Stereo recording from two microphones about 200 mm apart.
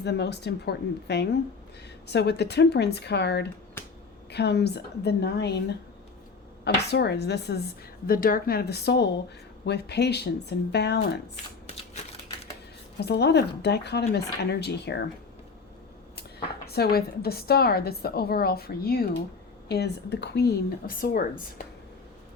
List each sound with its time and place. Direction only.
0.0 s a woman's voice: 55° left (ahead or behind)
6.8 s a woman's voice: 55° left (ahead or behind)
13.0 s a woman's voice: 55° left (ahead or behind)
16.6 s a woman's voice: 50° left (ahead or behind)